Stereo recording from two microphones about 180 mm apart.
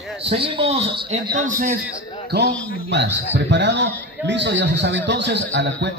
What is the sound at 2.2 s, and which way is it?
Speech, 65° right (ahead or behind).